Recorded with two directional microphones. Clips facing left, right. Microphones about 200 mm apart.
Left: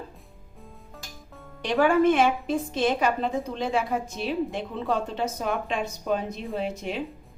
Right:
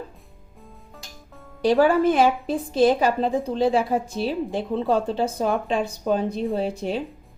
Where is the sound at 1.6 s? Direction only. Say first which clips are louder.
Right 3 dB; 35° right (ahead or behind).